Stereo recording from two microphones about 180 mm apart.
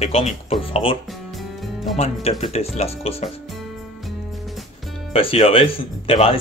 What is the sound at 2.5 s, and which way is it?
Speech, 35° left (ahead or behind).